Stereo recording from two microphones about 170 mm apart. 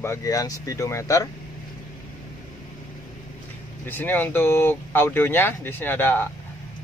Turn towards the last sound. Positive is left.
turn(degrees=10)  # may be behind; listen again after turning